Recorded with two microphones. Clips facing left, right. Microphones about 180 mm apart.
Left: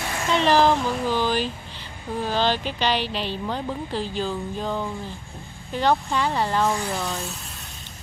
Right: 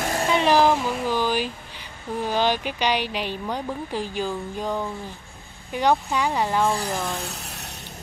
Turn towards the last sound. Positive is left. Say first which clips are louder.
# right 1 dB
turn(degrees=-75)  # may be behind; listen again after turning